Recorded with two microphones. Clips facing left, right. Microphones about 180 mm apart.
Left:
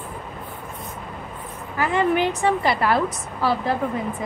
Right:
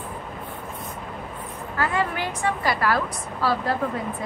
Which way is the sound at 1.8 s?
20° left (ahead or behind).